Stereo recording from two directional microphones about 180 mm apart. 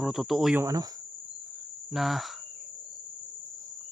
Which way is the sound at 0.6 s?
20° right (ahead or behind).